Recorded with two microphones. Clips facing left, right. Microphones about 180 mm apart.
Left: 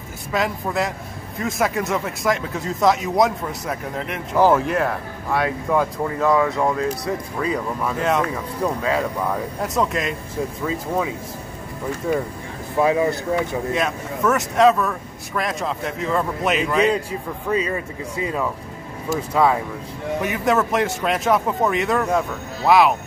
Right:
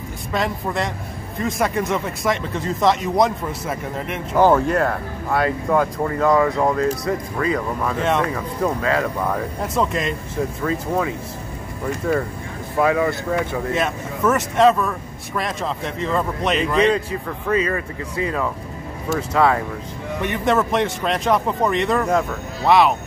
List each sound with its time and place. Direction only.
0.3 s speech: centre (ahead or behind)
9.2 s speech: centre (ahead or behind); by 13.4 s 20° left (ahead or behind)
13.7 s speech: centre (ahead or behind)
20.2 s speech: centre (ahead or behind)